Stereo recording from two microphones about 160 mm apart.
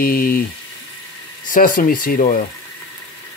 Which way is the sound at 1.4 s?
60° left (ahead or behind).